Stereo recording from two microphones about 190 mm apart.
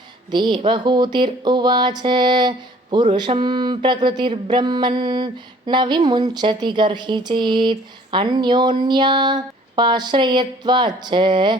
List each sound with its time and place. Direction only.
0.3 s speech: 25° right (ahead or behind)